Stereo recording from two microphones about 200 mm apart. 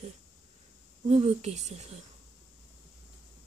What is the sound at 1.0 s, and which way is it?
Speech, 35° right (ahead or behind).